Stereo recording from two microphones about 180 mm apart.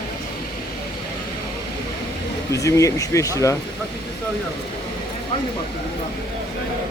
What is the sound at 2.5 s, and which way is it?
Speech, 15° left (ahead or behind).